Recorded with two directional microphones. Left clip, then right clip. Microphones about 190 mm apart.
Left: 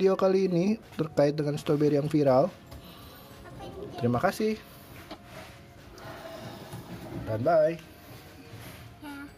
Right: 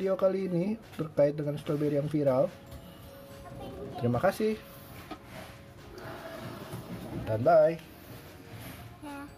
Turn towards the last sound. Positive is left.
turn(degrees=0)  # may be behind; listen again after turning